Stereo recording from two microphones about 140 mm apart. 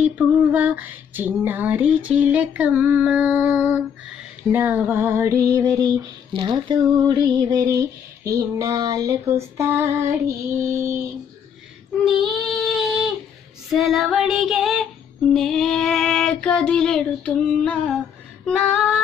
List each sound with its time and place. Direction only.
0.0 s female singing: 10° right (ahead or behind)
12.0 s female singing: centre (ahead or behind)